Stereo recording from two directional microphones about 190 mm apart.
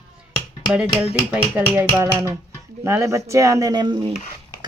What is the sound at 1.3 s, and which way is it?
Speech, 10° right (ahead or behind).